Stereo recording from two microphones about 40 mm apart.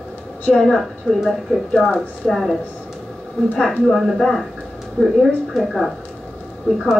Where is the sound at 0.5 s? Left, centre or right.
Centre.